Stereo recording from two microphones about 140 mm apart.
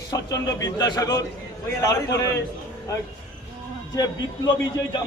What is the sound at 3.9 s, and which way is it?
Speech, 30° left (ahead or behind).